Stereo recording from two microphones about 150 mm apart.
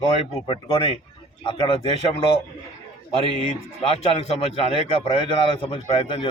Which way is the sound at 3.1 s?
40° left (ahead or behind).